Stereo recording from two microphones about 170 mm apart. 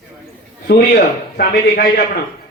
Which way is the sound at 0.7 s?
70° left (ahead or behind).